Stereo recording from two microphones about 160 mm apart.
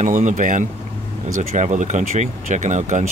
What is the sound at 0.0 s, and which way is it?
Speech, 50° right (ahead or behind).